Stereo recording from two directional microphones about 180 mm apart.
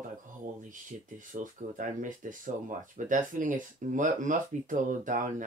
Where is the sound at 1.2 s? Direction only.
45° right (ahead or behind).